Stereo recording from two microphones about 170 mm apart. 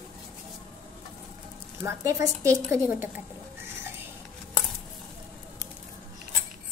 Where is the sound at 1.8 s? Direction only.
15° right (ahead or behind).